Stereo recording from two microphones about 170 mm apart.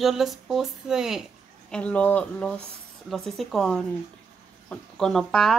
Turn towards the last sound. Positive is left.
turn(degrees=0)  # may be behind; listen again after turning